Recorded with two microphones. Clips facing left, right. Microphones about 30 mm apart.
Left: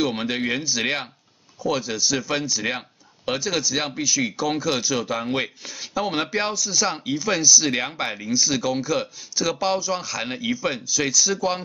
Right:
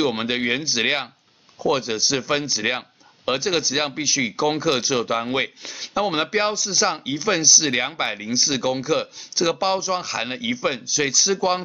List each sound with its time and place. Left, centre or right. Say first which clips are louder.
0.0 s speech: right 2 dB; centre